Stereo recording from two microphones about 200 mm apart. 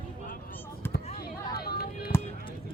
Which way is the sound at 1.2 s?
50° left (ahead or behind).